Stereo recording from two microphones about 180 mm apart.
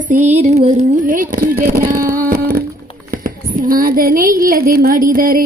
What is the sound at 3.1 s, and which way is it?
A woman's voice, 50° right (ahead or behind).